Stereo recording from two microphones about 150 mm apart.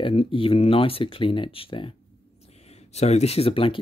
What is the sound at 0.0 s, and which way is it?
Speech, 40° left (ahead or behind).